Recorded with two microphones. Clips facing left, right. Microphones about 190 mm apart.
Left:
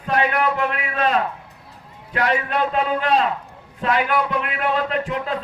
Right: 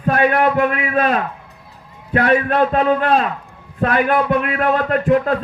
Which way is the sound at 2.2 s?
60° right (ahead or behind).